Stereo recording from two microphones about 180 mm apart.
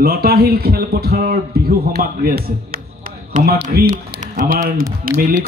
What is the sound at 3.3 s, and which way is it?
A man's voice, 45° right (ahead or behind).